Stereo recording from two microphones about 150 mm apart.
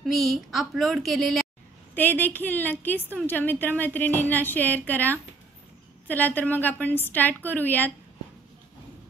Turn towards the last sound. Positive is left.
turn(degrees=10)  # may be behind; listen again after turning